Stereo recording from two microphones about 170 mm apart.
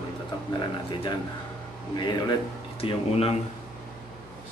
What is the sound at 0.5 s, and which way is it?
Speech, 30° left (ahead or behind).